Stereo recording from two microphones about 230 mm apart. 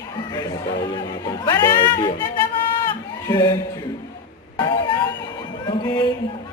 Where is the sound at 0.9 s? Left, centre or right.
Centre.